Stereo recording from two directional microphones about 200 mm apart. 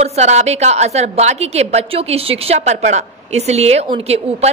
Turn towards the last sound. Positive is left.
turn(degrees=-30)  # may be behind; listen again after turning